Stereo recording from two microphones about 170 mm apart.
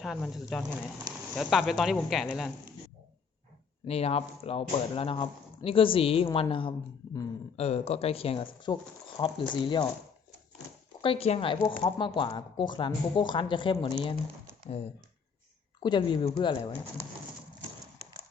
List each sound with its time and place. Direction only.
0.0 s speech: centre (ahead or behind)
3.8 s speech: 35° left (ahead or behind)
11.0 s speech: 35° left (ahead or behind)
11.6 s speech: 20° left (ahead or behind)
15.8 s speech: 25° left (ahead or behind)